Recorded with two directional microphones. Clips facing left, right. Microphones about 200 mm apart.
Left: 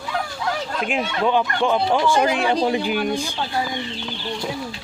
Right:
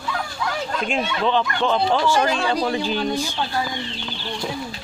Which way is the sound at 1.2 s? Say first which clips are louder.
Left 2 dB; 10° left (ahead or behind).